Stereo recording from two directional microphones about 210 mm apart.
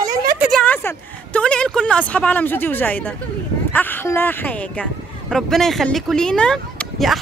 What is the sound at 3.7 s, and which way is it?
Speech, 10° left (ahead or behind).